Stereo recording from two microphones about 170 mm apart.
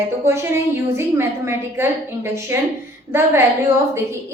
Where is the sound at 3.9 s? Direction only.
15° right (ahead or behind).